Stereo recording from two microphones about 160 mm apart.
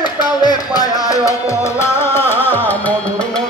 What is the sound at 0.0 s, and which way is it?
Music, 25° left (ahead or behind).